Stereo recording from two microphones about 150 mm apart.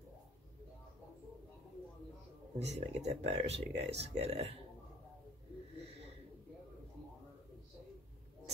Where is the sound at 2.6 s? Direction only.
45° right (ahead or behind).